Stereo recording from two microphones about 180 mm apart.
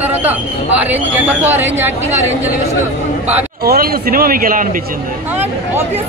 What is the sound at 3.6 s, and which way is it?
A man's voice, 60° right (ahead or behind).